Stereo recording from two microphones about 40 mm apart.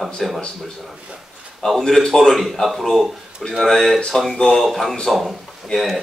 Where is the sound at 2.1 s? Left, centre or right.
Centre.